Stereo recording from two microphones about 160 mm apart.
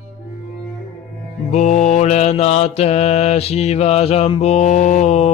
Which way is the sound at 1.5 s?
45° left (ahead or behind).